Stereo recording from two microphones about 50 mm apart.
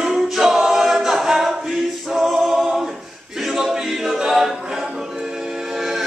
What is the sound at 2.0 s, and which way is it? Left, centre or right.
A capella, centre.